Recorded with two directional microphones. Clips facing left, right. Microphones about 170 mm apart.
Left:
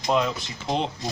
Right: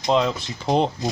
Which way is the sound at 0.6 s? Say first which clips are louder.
Right 6 dB; 40° right (ahead or behind).